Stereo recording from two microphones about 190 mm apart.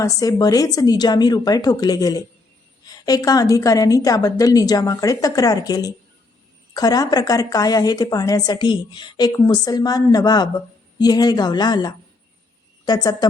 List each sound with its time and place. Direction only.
0.0 s a woman's voice: 20° left (ahead or behind)